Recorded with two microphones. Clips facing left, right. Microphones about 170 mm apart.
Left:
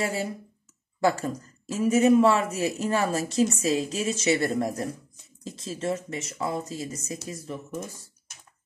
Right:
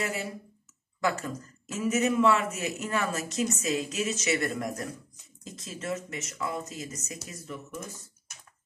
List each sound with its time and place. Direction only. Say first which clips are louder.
0.0 s a woman's voice: left 4 dB; 30° left (ahead or behind)